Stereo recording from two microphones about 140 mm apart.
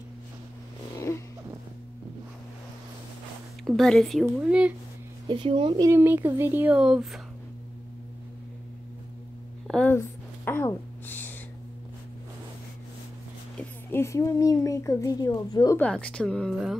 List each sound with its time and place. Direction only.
0.9 s vehicle: 20° left (ahead or behind)
3.6 s speech: centre (ahead or behind)
4.4 s speech: 10° right (ahead or behind)
5.3 s speech: 35° right (ahead or behind)
5.9 s speech: 15° right (ahead or behind)
9.7 s a sound: 5° left (ahead or behind)
9.9 s a sound: 15° left (ahead or behind)
13.9 s a woman's voice: 20° left (ahead or behind)
15.8 s a woman's voice: 5° left (ahead or behind)